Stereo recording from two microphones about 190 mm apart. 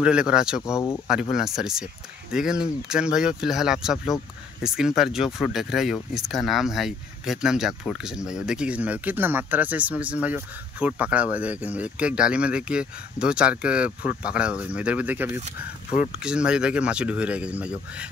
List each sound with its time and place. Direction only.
0.0 s speech: 5° right (ahead or behind)
0.6 s speech: 15° left (ahead or behind)
1.0 s speech: 5° right (ahead or behind)